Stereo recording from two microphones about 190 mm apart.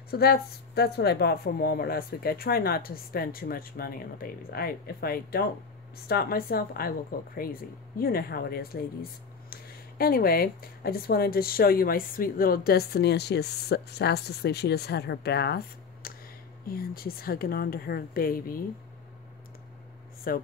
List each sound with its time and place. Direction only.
0.1 s speech: 55° left (ahead or behind)
20.3 s speech: 50° left (ahead or behind)